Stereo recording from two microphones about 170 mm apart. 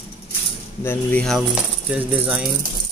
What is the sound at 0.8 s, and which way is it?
Speech, 5° left (ahead or behind).